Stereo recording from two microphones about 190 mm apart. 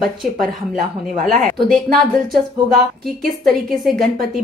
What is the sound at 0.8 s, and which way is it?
Speech, 40° right (ahead or behind).